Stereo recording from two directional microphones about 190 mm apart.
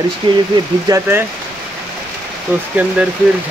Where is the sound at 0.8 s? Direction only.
15° right (ahead or behind).